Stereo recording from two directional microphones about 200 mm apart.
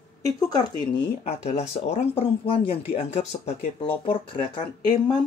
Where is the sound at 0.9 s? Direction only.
30° left (ahead or behind).